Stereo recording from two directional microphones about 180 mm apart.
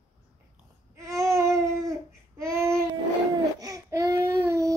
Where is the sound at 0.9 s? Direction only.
15° right (ahead or behind).